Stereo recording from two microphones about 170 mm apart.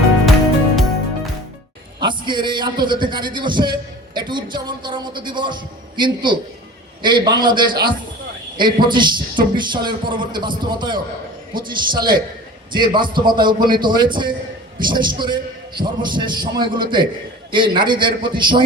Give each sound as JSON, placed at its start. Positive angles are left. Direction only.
{"t": 2.0, "sound": "a man's voice", "side_deg": -25}